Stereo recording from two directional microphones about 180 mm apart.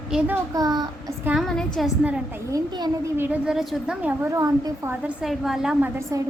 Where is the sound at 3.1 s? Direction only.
10° right (ahead or behind).